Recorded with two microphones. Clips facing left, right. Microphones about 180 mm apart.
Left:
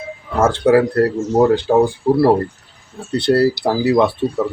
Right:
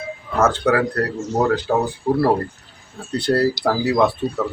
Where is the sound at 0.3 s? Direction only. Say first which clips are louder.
Left 5 dB; 25° left (ahead or behind).